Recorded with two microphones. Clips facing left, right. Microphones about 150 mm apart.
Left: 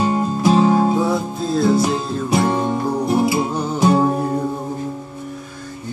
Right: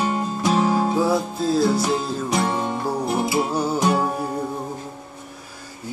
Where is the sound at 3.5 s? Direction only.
5° right (ahead or behind).